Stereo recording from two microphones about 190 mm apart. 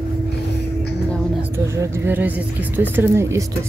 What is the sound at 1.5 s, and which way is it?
Speech, 15° right (ahead or behind).